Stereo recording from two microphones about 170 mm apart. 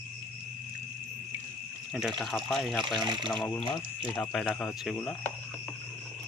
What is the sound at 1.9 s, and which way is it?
Speech, centre (ahead or behind).